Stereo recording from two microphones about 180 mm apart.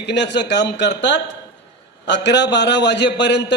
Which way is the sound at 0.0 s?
75° left (ahead or behind).